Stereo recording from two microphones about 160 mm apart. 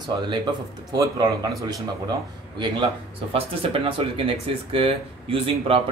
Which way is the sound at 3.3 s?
35° right (ahead or behind).